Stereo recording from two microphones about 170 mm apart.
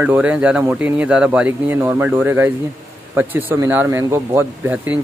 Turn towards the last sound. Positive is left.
turn(degrees=-10)  # may be behind; listen again after turning